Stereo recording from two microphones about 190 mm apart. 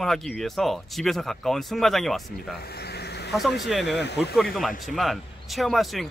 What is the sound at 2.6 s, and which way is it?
Vehicle, 55° left (ahead or behind).